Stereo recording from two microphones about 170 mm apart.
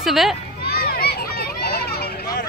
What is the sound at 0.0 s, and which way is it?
Speech, centre (ahead or behind).